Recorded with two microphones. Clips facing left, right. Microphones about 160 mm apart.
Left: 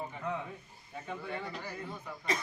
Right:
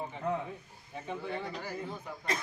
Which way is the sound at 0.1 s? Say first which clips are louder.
Right 4 dB; 25° right (ahead or behind).